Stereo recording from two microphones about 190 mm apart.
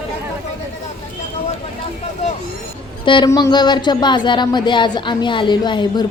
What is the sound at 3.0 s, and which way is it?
Speech, 25° left (ahead or behind).